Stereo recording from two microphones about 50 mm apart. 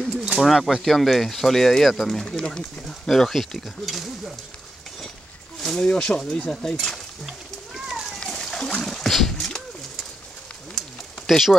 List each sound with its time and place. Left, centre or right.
0.2 s speech: centre
2.2 s speech: centre
2.9 s speech: centre
5.6 s a sound: centre
5.9 s speech: centre
8.2 s splash: centre
8.8 s a sound: centre
11.2 s speech: centre